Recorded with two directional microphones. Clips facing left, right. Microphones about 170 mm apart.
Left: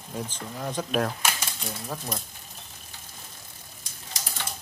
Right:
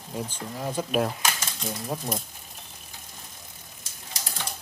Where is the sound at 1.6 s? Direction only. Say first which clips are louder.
Right 5 dB; 10° right (ahead or behind).